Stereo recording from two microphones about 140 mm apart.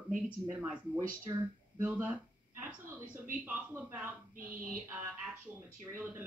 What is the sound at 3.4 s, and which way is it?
Speech, 15° right (ahead or behind).